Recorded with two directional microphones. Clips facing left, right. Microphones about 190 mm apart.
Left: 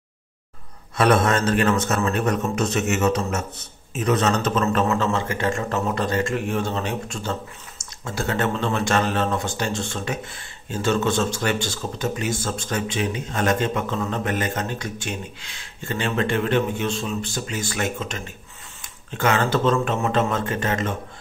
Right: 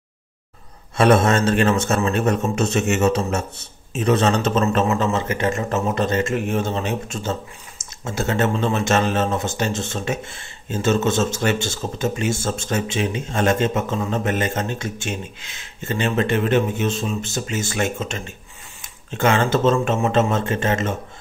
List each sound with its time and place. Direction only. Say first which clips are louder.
0.9 s speech: right 3 dB; 25° right (ahead or behind)